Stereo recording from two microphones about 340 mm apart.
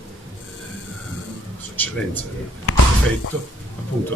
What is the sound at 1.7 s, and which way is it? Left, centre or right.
Speech, centre.